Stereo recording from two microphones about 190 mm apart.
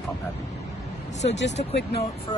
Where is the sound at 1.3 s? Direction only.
70° left (ahead or behind).